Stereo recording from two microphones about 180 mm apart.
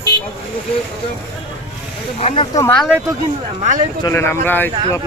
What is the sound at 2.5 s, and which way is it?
Speech, 15° left (ahead or behind).